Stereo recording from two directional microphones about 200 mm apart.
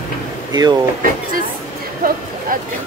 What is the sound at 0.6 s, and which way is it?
Speech, 20° right (ahead or behind).